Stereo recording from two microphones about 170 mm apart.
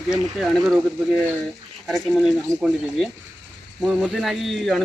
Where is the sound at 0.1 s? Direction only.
Centre (ahead or behind).